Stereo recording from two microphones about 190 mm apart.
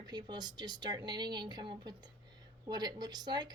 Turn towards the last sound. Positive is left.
turn(degrees=-20)  # may be behind; listen again after turning